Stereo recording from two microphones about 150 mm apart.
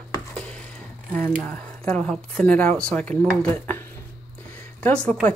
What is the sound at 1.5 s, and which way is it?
Speech, 5° left (ahead or behind).